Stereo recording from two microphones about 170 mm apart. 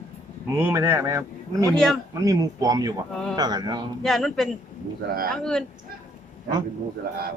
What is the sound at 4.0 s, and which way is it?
Speech, centre (ahead or behind).